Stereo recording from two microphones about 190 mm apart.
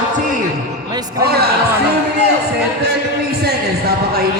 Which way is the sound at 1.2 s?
55° right (ahead or behind).